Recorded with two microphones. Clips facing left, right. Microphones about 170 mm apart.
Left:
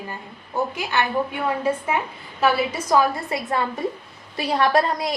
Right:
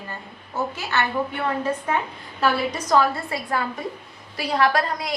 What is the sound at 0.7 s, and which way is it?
A woman's voice, 15° left (ahead or behind).